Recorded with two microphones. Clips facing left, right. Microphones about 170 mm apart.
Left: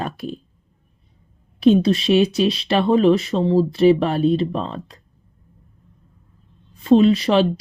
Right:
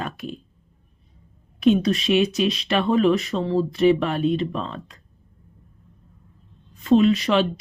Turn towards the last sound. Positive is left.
turn(degrees=30)  # may be behind; listen again after turning